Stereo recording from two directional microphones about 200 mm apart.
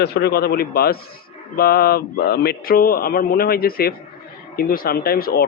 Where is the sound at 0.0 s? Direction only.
55° left (ahead or behind).